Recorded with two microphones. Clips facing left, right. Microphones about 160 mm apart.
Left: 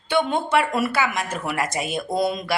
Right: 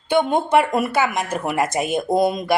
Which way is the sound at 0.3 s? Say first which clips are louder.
Right 4 dB; 50° right (ahead or behind).